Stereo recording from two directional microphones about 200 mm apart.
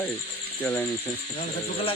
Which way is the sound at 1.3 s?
30° left (ahead or behind).